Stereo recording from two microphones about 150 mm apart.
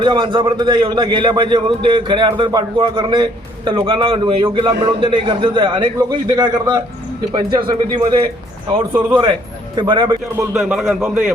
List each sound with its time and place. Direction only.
0.0 s a man's voice: 35° right (ahead or behind)
8.9 s a man's voice: 15° right (ahead or behind)
9.7 s a man's voice: 35° right (ahead or behind)
10.5 s speech: centre (ahead or behind)